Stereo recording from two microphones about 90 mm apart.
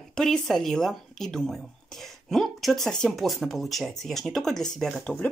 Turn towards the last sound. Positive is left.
turn(degrees=15)  # may be behind; listen again after turning